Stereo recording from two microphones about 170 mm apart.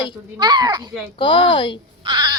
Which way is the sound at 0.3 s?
25° right (ahead or behind).